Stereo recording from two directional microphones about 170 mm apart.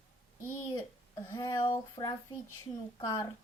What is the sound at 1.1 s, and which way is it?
Speech, 20° left (ahead or behind).